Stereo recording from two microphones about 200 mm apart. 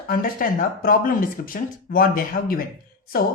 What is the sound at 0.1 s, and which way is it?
Speech, 45° left (ahead or behind).